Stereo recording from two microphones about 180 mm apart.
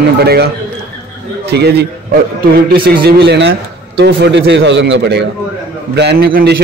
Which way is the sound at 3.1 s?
65° right (ahead or behind).